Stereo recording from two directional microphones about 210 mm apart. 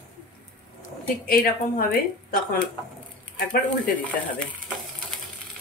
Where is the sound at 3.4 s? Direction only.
40° left (ahead or behind).